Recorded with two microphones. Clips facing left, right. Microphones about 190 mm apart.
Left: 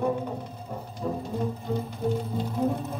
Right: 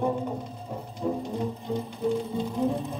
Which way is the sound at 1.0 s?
20° right (ahead or behind).